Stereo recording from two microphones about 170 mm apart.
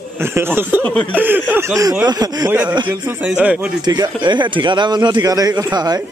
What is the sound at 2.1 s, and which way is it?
Speech, 25° right (ahead or behind).